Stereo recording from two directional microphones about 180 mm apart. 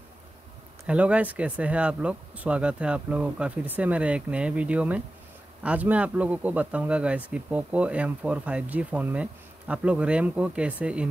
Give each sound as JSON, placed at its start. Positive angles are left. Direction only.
{"t": 0.8, "sound": "speech", "side_deg": -5}